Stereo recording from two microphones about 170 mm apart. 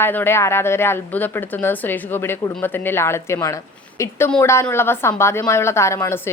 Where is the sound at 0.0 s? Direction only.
10° left (ahead or behind).